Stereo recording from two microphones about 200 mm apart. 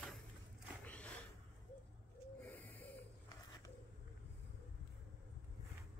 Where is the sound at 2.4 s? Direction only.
10° left (ahead or behind).